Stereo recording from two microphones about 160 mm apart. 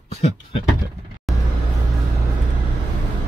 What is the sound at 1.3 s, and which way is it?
Vehicle, centre (ahead or behind).